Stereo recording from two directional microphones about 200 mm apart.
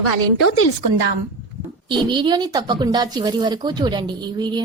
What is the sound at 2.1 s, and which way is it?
Speech, 25° right (ahead or behind).